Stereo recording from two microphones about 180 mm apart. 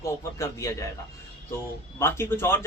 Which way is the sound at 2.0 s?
15° left (ahead or behind).